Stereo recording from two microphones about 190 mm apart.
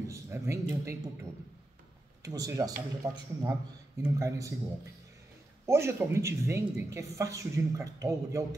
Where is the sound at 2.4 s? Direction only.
20° right (ahead or behind).